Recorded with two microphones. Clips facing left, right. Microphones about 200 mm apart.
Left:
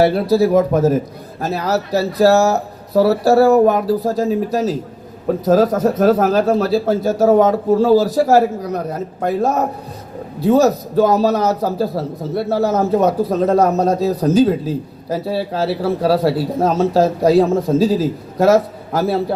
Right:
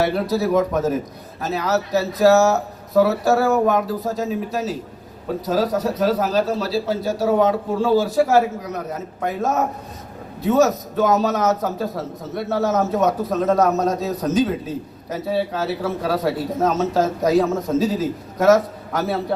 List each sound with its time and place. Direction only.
0.0 s a man's voice: 30° left (ahead or behind)
5.5 s a man's voice: 50° left (ahead or behind); by 19.2 s 30° left (ahead or behind)